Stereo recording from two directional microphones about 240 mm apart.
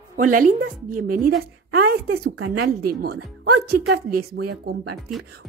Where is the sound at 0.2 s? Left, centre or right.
Right.